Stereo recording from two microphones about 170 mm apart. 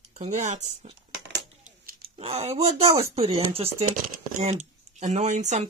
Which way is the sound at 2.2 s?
40° right (ahead or behind).